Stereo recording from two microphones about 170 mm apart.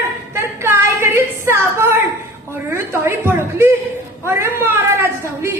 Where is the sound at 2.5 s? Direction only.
15° right (ahead or behind).